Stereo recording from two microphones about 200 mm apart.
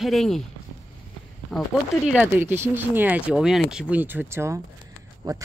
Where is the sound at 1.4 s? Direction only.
Centre (ahead or behind); by 5.4 s 20° right (ahead or behind).